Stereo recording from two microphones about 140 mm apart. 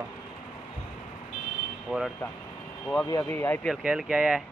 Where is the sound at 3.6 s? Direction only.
5° right (ahead or behind).